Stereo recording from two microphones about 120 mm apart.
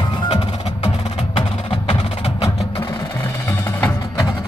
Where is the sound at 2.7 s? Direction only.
45° left (ahead or behind).